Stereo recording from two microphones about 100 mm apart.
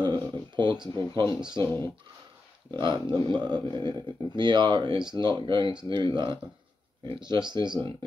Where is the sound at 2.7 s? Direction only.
50° right (ahead or behind).